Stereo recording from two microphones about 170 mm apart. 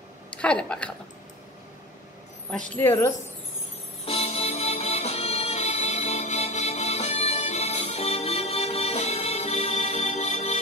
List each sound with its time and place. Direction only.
0.4 s speech: 5° left (ahead or behind)
2.5 s speech: 10° left (ahead or behind)
4.0 s music: 35° left (ahead or behind)